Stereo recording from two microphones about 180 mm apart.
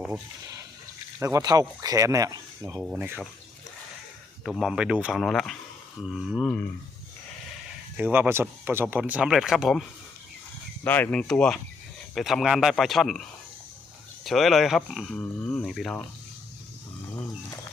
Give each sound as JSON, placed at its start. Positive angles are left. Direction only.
{"t": 1.2, "sound": "speech", "side_deg": -20}
{"t": 2.8, "sound": "speech", "side_deg": -10}
{"t": 4.4, "sound": "speech", "side_deg": 0}
{"t": 7.9, "sound": "speech", "side_deg": -10}
{"t": 10.8, "sound": "speech", "side_deg": 10}
{"t": 14.3, "sound": "speech", "side_deg": 0}